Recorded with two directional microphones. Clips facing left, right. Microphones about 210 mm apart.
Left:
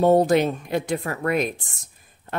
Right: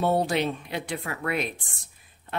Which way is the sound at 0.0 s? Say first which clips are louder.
Left 7 dB; 45° left (ahead or behind).